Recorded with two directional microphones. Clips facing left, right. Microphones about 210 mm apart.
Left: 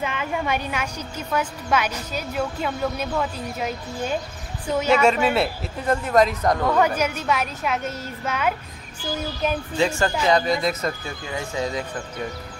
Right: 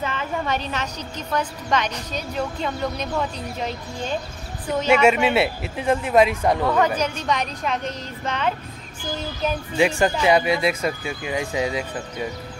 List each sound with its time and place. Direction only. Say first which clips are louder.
0.0 s a woman's voice: even; 10° left (ahead or behind)
4.8 s speech: right 2 dB; 10° right (ahead or behind)
7.0 s a woman's voice: even; 5° left (ahead or behind)
9.8 s speech: right 3 dB; 15° right (ahead or behind)